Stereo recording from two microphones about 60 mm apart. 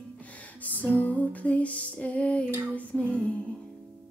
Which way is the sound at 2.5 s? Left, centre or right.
Right.